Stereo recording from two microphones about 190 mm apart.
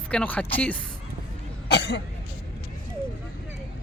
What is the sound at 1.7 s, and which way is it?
Cough, 60° left (ahead or behind).